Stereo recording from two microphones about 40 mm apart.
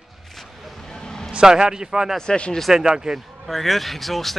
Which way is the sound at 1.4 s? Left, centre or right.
Centre.